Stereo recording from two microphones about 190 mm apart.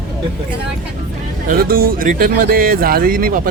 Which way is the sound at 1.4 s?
50° right (ahead or behind).